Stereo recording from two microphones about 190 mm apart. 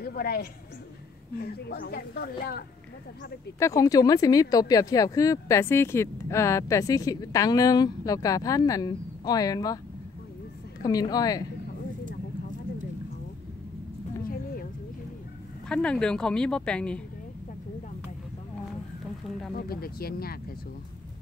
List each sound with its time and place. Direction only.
0.0 s a woman's voice: 50° left (ahead or behind)
3.5 s speech: 15° left (ahead or behind)
10.8 s speech: 20° left (ahead or behind)
14.3 s a sound: 50° left (ahead or behind)
15.7 s a woman's voice: 5° left (ahead or behind)
19.5 s speech: 50° left (ahead or behind)